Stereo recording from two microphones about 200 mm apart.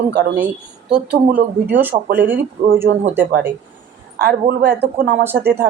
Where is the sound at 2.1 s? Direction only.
10° right (ahead or behind).